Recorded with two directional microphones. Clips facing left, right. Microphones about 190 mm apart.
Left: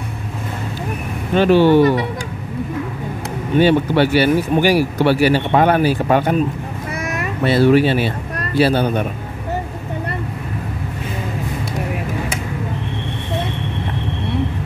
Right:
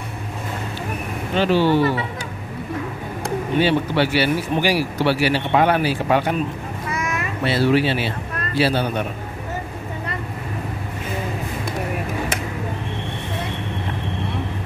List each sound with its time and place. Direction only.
1.3 s speech: 55° left (ahead or behind)
3.5 s speech: 50° left (ahead or behind)
7.0 s cat: 45° left (ahead or behind)
8.5 s speech: 50° left (ahead or behind)